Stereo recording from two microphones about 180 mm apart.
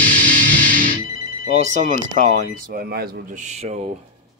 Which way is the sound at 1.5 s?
40° right (ahead or behind).